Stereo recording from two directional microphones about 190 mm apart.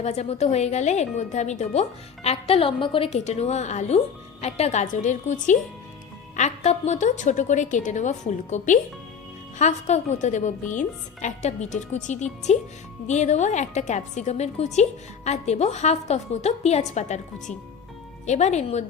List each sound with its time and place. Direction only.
0.0 s speech: 35° left (ahead or behind)
18.3 s speech: 35° left (ahead or behind)